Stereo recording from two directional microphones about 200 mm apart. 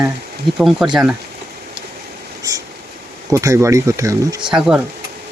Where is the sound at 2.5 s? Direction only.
20° right (ahead or behind).